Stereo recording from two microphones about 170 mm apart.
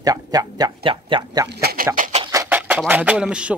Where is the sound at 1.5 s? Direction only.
65° right (ahead or behind); by 2.2 s 50° right (ahead or behind).